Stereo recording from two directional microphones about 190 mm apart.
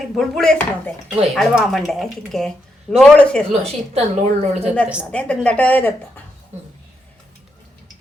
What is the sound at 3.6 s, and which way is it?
Speech, 35° right (ahead or behind).